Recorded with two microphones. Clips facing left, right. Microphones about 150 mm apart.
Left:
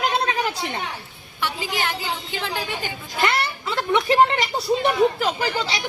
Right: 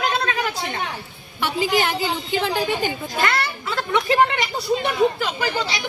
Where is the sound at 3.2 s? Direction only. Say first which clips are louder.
Left 2 dB; 20° left (ahead or behind).